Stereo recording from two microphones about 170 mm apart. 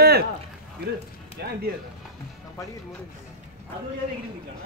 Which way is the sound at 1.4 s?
70° right (ahead or behind).